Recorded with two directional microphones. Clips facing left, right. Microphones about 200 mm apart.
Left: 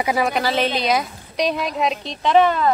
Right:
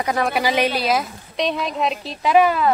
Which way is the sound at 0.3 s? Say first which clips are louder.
Right 1 dB; 10° right (ahead or behind).